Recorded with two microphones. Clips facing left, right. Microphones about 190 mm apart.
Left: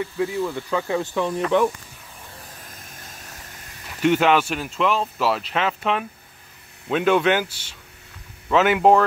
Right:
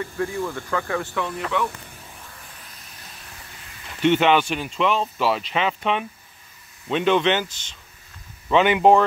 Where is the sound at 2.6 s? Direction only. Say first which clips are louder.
Left 3 dB; 45° left (ahead or behind).